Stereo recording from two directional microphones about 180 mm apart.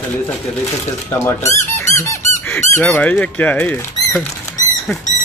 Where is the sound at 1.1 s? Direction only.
15° left (ahead or behind).